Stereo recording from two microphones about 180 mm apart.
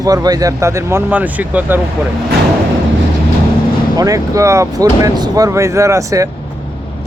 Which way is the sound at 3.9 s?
20° right (ahead or behind).